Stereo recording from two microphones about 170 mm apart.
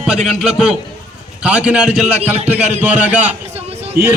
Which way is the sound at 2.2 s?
40° right (ahead or behind).